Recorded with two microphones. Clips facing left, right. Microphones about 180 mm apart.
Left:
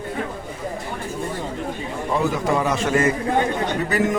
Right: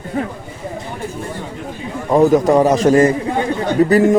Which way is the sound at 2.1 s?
40° right (ahead or behind).